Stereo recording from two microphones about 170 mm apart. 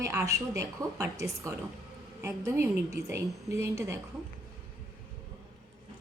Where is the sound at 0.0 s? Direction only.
15° right (ahead or behind).